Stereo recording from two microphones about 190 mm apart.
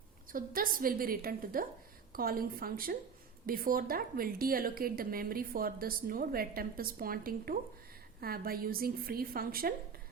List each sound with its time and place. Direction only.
0.3 s a woman's voice: 50° right (ahead or behind)